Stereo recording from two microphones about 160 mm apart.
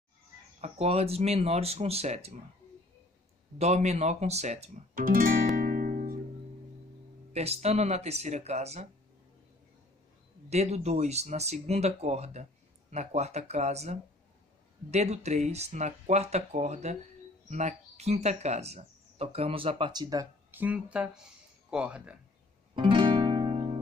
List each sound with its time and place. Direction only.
0.6 s speech: 40° right (ahead or behind)
3.5 s speech: 45° right (ahead or behind)
4.9 s music: 65° right (ahead or behind)
7.3 s speech: 40° right (ahead or behind)
10.5 s speech: 45° right (ahead or behind); by 20.2 s 25° right (ahead or behind)
20.5 s speech: 10° right (ahead or behind)
22.8 s music: 30° right (ahead or behind)